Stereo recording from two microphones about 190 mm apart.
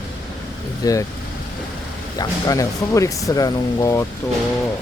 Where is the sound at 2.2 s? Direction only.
20° left (ahead or behind).